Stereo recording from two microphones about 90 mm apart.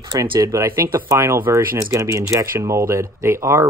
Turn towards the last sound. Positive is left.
turn(degrees=-30)  # may be behind; listen again after turning